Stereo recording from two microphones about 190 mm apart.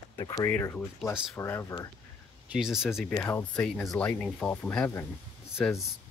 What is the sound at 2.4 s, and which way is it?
Speech, 5° right (ahead or behind).